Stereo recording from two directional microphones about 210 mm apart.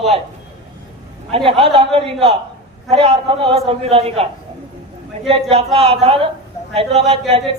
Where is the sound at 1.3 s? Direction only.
25° right (ahead or behind).